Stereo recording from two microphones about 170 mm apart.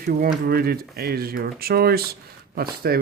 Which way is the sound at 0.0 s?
60° right (ahead or behind).